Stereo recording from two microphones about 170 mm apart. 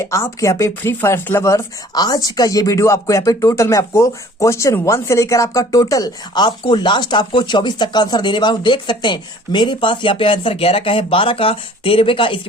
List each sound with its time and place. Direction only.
0.0 s speech: 15° left (ahead or behind)